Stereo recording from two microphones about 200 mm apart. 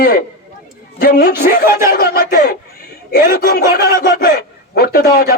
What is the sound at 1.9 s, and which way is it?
A man's voice, 50° left (ahead or behind).